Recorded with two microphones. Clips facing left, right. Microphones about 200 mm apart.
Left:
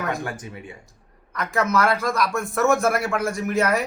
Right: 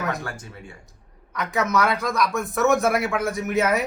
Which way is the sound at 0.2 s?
20° left (ahead or behind).